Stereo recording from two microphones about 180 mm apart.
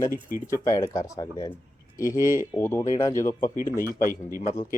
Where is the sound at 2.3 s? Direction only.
15° right (ahead or behind).